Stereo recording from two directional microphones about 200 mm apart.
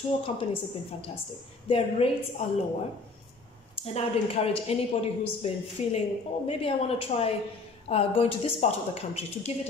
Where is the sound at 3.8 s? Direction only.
30° left (ahead or behind).